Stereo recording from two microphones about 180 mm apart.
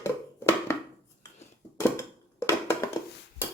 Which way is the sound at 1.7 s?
15° left (ahead or behind).